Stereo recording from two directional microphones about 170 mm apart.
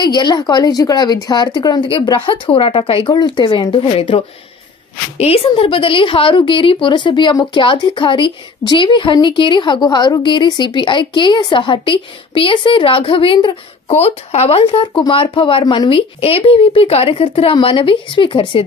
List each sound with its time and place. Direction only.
0.0 s a woman's voice: 25° left (ahead or behind)